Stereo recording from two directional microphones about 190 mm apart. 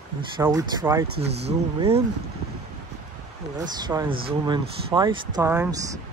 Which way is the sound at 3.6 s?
20° right (ahead or behind).